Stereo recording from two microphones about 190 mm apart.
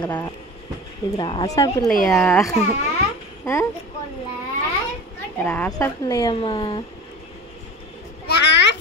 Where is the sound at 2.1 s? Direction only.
5° left (ahead or behind).